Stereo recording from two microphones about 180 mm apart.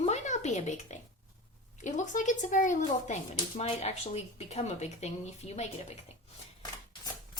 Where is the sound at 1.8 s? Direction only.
45° left (ahead or behind).